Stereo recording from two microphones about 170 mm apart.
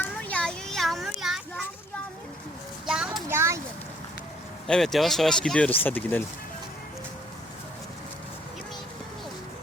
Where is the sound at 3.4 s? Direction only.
15° right (ahead or behind).